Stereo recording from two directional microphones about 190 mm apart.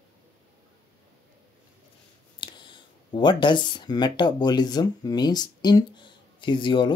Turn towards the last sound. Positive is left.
turn(degrees=25)  # may be behind; listen again after turning